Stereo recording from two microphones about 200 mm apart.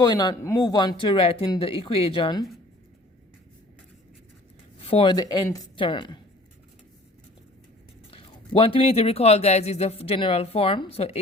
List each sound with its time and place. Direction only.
0.0 s speech: 20° left (ahead or behind)
4.8 s speech: 25° left (ahead or behind)
8.1 s speech: 25° left (ahead or behind)